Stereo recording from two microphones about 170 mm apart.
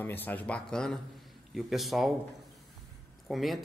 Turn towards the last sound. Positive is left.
turn(degrees=0)  # may be behind; listen again after turning